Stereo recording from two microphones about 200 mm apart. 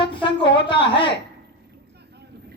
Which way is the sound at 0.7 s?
25° left (ahead or behind).